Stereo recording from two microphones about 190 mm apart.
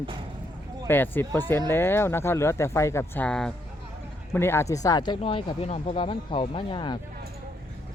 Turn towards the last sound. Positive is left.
turn(degrees=25)  # may be behind; listen again after turning